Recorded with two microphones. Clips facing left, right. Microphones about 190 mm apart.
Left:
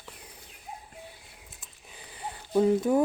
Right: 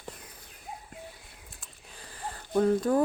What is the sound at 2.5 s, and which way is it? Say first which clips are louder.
Speech: left 1 dB; 10° left (ahead or behind).